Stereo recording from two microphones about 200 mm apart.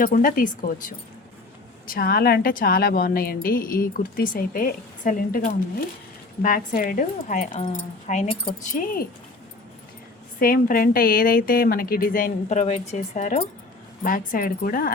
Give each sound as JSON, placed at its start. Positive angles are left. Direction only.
{"t": 0.0, "sound": "a woman's voice", "side_deg": 40}
{"t": 10.4, "sound": "a woman's voice", "side_deg": 45}